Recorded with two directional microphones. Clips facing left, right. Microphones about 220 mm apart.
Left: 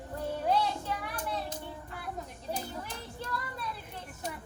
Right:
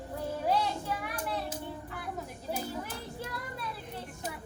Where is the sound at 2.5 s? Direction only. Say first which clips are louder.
Right 2 dB; 5° right (ahead or behind).